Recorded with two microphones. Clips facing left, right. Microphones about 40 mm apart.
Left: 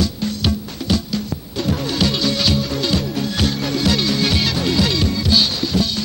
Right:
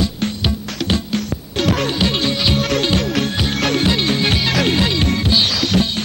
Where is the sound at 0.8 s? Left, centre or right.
Right.